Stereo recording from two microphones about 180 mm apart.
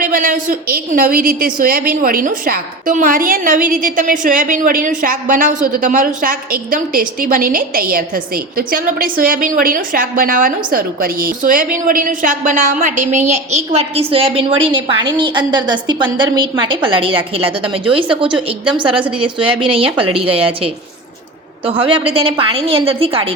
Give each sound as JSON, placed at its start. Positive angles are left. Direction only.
{"t": 0.0, "sound": "a woman's voice", "side_deg": -50}
{"t": 18.6, "sound": "a woman's voice", "side_deg": -30}
{"t": 21.7, "sound": "a woman's voice", "side_deg": -30}